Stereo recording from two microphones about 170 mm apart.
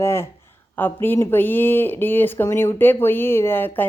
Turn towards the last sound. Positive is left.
turn(degrees=10)  # may be behind; listen again after turning